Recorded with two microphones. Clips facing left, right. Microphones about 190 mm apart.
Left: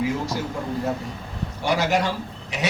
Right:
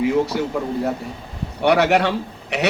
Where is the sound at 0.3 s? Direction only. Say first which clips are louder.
Right 6 dB; 65° right (ahead or behind).